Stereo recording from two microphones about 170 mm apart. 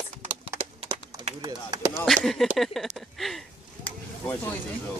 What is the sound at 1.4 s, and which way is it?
Speech, 20° right (ahead or behind).